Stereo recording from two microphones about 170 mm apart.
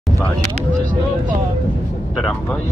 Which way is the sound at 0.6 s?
50° right (ahead or behind).